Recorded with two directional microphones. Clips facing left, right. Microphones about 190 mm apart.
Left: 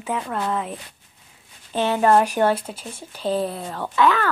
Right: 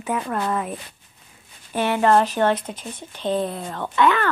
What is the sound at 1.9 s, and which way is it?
Speech, 15° left (ahead or behind).